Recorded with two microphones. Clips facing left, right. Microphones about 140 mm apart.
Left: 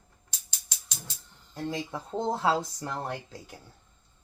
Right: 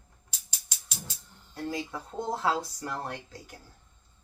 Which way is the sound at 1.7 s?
20° left (ahead or behind).